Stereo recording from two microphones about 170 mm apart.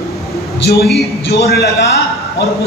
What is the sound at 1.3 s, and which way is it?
Speech, 75° left (ahead or behind).